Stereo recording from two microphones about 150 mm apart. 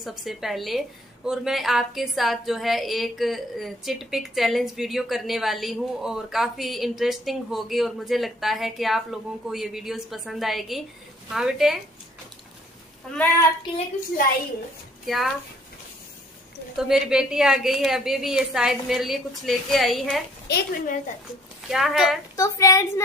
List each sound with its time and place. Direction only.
0.0 s a woman's voice: centre (ahead or behind)
13.1 s a woman's voice: 5° left (ahead or behind)
15.0 s a woman's voice: centre (ahead or behind)
16.7 s a woman's voice: 5° right (ahead or behind)
20.4 s a woman's voice: 75° left (ahead or behind)
21.6 s a woman's voice: centre (ahead or behind)
22.3 s a woman's voice: 20° left (ahead or behind)